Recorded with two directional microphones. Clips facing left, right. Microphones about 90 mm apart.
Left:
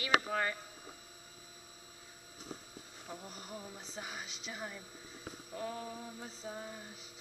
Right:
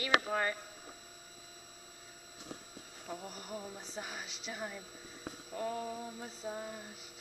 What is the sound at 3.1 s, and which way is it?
Speech, 5° right (ahead or behind).